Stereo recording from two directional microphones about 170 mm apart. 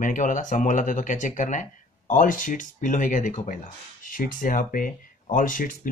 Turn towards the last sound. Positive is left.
turn(degrees=50)  # may be behind; listen again after turning